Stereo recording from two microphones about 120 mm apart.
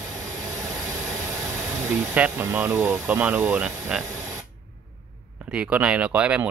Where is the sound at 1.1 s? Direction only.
25° right (ahead or behind).